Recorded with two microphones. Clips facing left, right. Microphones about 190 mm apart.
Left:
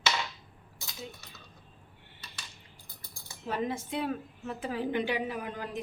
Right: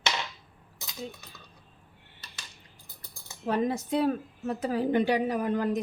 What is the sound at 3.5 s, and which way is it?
A woman's voice, 40° right (ahead or behind).